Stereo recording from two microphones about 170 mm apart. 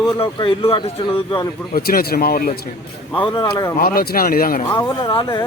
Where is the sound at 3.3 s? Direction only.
20° left (ahead or behind).